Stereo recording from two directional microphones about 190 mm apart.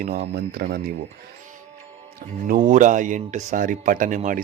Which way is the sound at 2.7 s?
40° right (ahead or behind).